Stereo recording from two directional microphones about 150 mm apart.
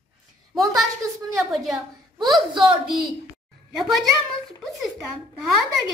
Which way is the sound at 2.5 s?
35° right (ahead or behind).